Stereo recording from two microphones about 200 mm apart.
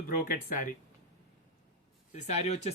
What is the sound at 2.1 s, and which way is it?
Speech, 35° left (ahead or behind).